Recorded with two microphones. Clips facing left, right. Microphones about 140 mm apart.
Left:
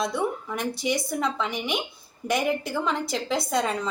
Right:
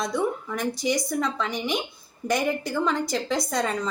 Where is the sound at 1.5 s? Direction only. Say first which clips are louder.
Right 2 dB; 35° right (ahead or behind).